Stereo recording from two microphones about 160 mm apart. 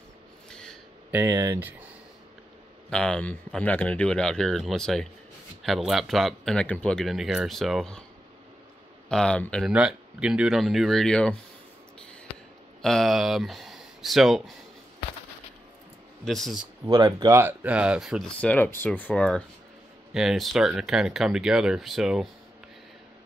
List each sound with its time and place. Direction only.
0.5 s snort: 5° left (ahead or behind)
1.1 s speech: 15° right (ahead or behind)
2.9 s speech: 5° left (ahead or behind)
9.1 s speech: 5° left (ahead or behind)
9.7 s speech: 5° right (ahead or behind)
12.8 s speech: centre (ahead or behind)
16.3 s speech: centre (ahead or behind)
16.9 s speech: 25° right (ahead or behind)
17.4 s speech: 10° right (ahead or behind)
18.4 s speech: 10° left (ahead or behind)